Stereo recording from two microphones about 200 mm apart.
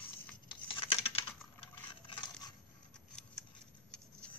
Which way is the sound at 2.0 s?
25° left (ahead or behind).